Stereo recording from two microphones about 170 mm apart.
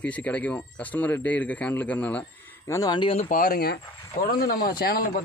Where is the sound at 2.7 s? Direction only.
20° left (ahead or behind).